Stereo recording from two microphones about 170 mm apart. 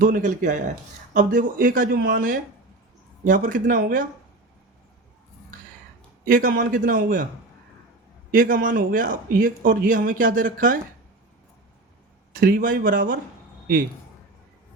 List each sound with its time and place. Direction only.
0.0 s speech: 50° right (ahead or behind)
6.2 s speech: 55° right (ahead or behind)
8.3 s speech: 55° right (ahead or behind)
12.3 s speech: 55° right (ahead or behind)